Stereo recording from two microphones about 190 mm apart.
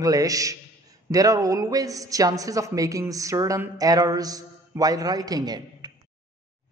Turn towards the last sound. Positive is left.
turn(degrees=-20)  # may be behind; listen again after turning